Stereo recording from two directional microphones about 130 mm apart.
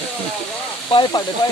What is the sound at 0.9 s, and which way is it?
Speech, 40° left (ahead or behind).